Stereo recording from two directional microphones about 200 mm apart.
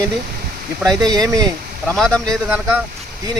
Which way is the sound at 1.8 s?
5° left (ahead or behind).